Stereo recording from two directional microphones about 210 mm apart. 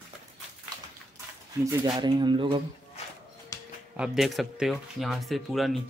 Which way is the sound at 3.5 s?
15° left (ahead or behind).